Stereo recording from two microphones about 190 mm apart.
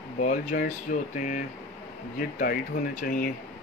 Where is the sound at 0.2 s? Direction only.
40° left (ahead or behind).